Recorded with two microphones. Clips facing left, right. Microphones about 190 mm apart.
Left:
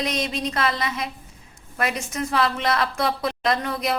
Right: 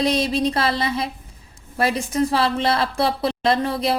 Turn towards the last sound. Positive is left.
turn(degrees=-30)  # may be behind; listen again after turning